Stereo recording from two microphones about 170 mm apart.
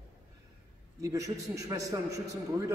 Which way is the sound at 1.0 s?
20° right (ahead or behind).